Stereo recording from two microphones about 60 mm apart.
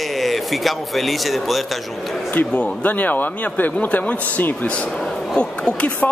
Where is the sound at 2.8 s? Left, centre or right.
Left.